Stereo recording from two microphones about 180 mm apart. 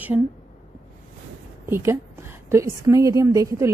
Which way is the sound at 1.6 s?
15° right (ahead or behind).